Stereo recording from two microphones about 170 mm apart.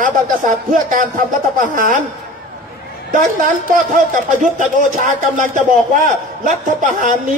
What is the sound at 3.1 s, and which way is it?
A man's voice, 50° right (ahead or behind).